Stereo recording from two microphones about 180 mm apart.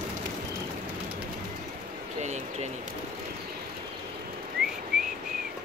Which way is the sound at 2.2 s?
40° right (ahead or behind).